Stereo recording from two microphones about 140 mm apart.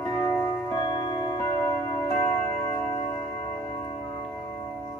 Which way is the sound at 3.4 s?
25° left (ahead or behind).